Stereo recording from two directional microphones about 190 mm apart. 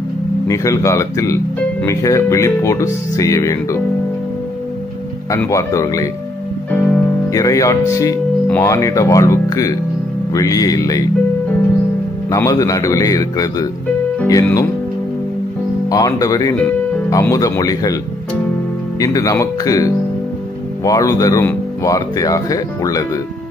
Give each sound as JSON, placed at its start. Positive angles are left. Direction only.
{"t": 0.5, "sound": "speech", "side_deg": 15}
{"t": 5.3, "sound": "speech", "side_deg": 15}
{"t": 12.3, "sound": "a man's voice", "side_deg": 20}
{"t": 15.9, "sound": "speech", "side_deg": 20}
{"t": 18.9, "sound": "speech", "side_deg": 15}